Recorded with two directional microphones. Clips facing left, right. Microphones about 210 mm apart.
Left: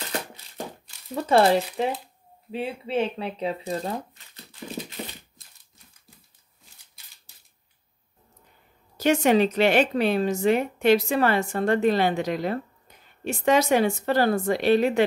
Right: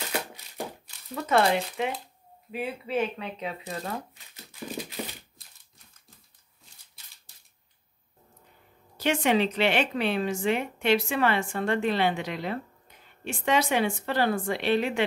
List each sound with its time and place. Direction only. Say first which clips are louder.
1.1 s a woman's voice: left 4 dB; 30° left (ahead or behind)
8.9 s a woman's voice: left 5 dB; 40° left (ahead or behind)